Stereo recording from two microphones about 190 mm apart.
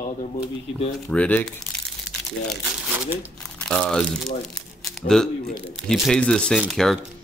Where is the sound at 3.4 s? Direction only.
5° left (ahead or behind).